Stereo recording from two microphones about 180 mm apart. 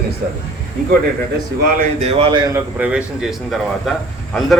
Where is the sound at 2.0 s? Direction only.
30° right (ahead or behind).